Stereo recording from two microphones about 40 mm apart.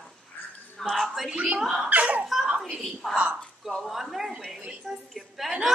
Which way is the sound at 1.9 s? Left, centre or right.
Right.